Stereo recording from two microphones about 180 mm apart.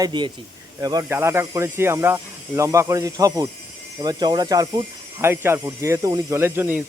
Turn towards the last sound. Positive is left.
turn(degrees=-15)  # may be behind; listen again after turning